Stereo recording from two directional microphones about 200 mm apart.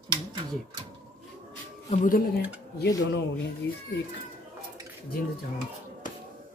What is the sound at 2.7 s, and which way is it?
Speech, 55° left (ahead or behind).